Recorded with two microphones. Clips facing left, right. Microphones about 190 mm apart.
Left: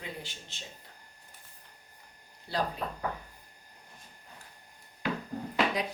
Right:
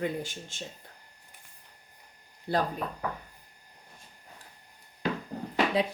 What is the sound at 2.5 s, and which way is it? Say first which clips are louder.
Speech: right 4 dB; 50° right (ahead or behind).